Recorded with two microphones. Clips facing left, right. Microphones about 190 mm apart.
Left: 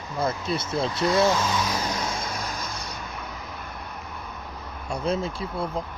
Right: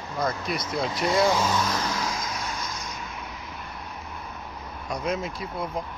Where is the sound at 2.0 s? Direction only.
30° left (ahead or behind).